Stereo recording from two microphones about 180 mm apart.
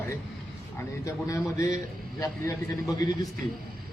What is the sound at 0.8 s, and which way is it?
Speech, 15° left (ahead or behind).